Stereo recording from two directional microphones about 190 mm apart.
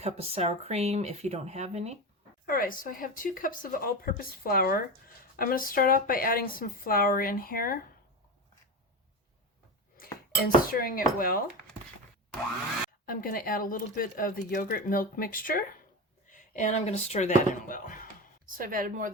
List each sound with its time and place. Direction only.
0.0 s speech: 35° right (ahead or behind)
2.5 s speech: 50° left (ahead or behind)
10.0 s speech: 50° left (ahead or behind)
13.1 s speech: 50° left (ahead or behind)
18.4 s speech: 45° right (ahead or behind)